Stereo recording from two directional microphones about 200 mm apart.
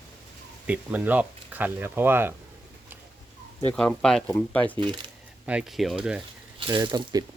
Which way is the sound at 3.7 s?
5° left (ahead or behind).